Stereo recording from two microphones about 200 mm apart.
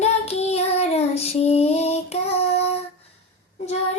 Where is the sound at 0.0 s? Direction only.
30° left (ahead or behind).